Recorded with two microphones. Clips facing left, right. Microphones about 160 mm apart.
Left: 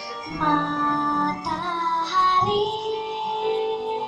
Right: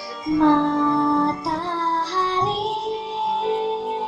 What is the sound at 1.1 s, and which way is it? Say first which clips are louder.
Music: right 5 dB; 35° right (ahead or behind).